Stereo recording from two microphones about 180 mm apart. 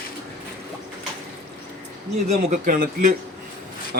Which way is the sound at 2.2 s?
45° right (ahead or behind).